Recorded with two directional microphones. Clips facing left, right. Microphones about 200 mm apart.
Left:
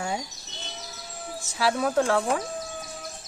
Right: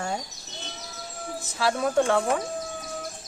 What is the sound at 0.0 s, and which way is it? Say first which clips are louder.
Bird vocalization: even; centre (ahead or behind).